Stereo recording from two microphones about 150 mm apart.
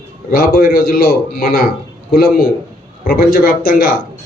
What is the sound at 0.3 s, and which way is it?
A man's voice, 85° left.